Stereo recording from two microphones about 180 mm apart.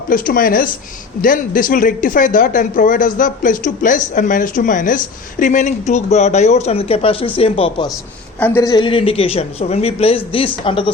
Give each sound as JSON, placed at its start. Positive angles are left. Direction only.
{"t": 0.1, "sound": "speech", "side_deg": 50}
{"t": 8.4, "sound": "speech", "side_deg": 10}